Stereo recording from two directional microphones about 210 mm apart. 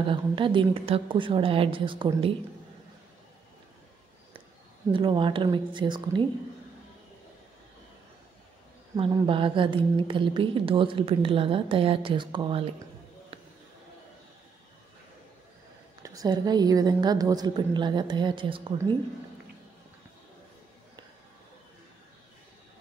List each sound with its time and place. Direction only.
0.1 s speech: 25° right (ahead or behind)
4.9 s speech: 25° right (ahead or behind)
8.9 s speech: 25° right (ahead or behind)
16.0 s speech: 15° right (ahead or behind)